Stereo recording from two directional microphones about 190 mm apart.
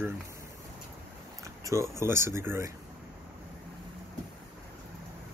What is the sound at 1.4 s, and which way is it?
Speech, 15° right (ahead or behind).